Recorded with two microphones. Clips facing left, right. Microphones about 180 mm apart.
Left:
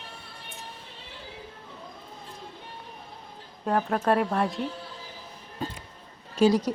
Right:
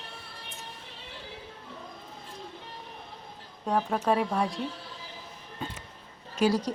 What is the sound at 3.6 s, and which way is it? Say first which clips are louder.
Speech: left 2 dB; centre (ahead or behind).